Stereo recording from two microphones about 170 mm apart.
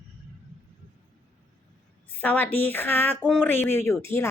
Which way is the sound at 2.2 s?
10° left (ahead or behind).